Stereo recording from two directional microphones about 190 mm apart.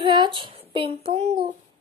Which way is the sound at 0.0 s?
25° right (ahead or behind).